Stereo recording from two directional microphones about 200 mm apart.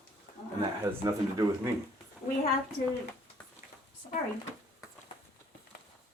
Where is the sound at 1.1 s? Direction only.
20° right (ahead or behind).